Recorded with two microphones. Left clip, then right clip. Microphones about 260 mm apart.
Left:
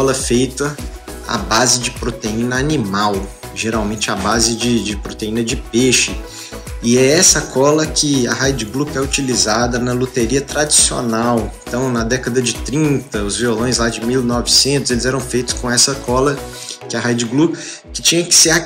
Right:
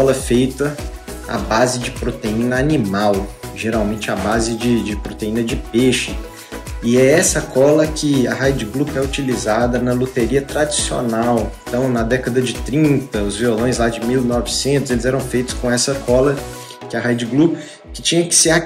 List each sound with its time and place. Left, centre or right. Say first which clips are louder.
0.0 s speech: right 1 dB; centre